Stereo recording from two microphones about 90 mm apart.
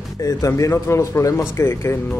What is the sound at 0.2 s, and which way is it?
Speech, 40° left (ahead or behind).